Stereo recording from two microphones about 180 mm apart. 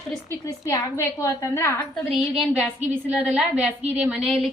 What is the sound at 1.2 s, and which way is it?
Speech, 15° left (ahead or behind).